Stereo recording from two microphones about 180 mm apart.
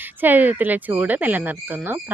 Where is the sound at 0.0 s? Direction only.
10° right (ahead or behind).